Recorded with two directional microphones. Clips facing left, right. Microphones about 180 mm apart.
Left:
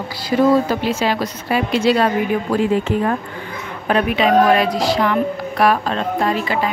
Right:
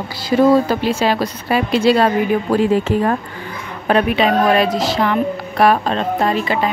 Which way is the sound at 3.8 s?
35° right (ahead or behind).